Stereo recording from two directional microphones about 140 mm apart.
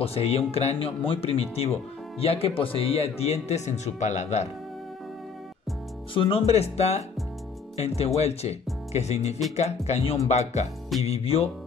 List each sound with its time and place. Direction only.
0.0 s speech: 45° left (ahead or behind)
6.1 s speech: 40° left (ahead or behind)